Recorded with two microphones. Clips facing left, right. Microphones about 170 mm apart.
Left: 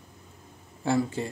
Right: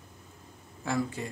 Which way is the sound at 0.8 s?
30° left (ahead or behind).